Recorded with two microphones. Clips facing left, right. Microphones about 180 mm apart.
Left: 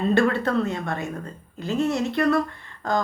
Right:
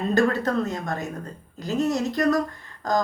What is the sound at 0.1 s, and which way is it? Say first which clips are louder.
A woman's voice: even; 40° right (ahead or behind).